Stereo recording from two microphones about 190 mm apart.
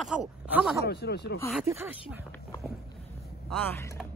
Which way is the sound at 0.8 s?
60° left (ahead or behind).